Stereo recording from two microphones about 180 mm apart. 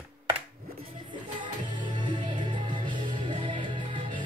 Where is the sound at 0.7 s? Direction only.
30° right (ahead or behind).